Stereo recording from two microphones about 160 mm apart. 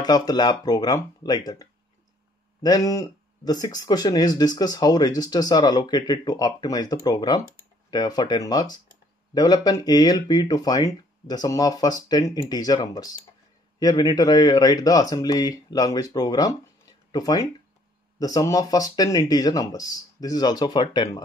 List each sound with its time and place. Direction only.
0.0 s speech: 25° left (ahead or behind)